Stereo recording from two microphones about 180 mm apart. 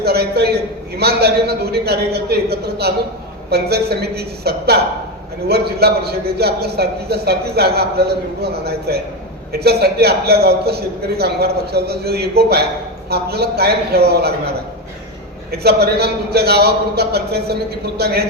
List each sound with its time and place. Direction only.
0.0 s a sound: 60° right (ahead or behind)
0.9 s a man's voice: 60° right (ahead or behind)
15.5 s a man's voice: 60° right (ahead or behind)